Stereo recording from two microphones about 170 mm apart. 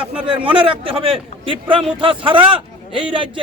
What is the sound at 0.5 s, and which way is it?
Speech, 30° right (ahead or behind).